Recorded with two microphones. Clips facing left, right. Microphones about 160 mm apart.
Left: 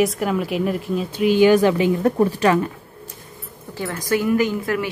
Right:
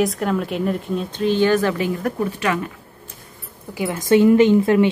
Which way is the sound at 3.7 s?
15° right (ahead or behind).